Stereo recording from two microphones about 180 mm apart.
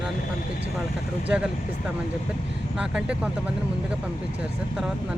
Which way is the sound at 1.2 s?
5° right (ahead or behind).